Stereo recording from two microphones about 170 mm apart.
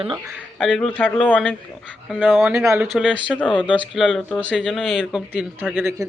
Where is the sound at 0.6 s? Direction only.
Centre (ahead or behind).